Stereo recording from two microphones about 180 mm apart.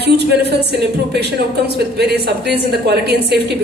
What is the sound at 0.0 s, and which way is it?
A woman's voice, 65° right (ahead or behind).